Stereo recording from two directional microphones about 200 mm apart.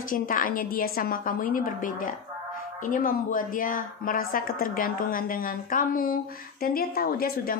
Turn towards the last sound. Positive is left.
turn(degrees=50)  # may be behind; listen again after turning